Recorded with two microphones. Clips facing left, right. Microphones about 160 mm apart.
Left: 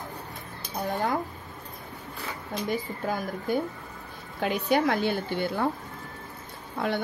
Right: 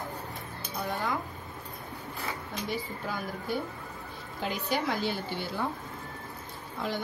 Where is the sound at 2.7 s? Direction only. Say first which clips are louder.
Left 6 dB; 50° left (ahead or behind).